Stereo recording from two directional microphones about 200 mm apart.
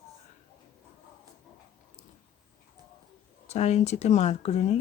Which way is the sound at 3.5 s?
35° left (ahead or behind).